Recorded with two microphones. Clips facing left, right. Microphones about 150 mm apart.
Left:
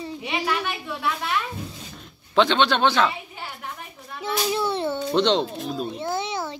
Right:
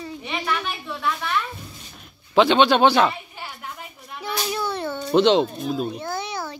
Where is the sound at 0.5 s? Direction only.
10° left (ahead or behind).